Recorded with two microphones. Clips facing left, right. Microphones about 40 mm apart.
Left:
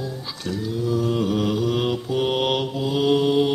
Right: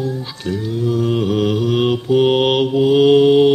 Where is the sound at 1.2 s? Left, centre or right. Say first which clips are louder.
Right 5 dB; right.